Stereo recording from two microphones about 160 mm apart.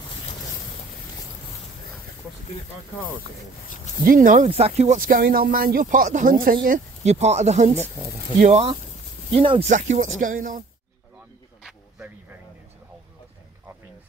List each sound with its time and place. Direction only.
4.0 s speech: 60° right (ahead or behind)
4.5 s speech: 40° right (ahead or behind)
5.0 s speech: 70° right (ahead or behind)
7.1 s speech: 45° right (ahead or behind)
9.7 s speech: 50° right (ahead or behind)